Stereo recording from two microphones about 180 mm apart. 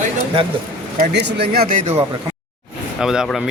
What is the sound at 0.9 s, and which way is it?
Speech, 70° right (ahead or behind).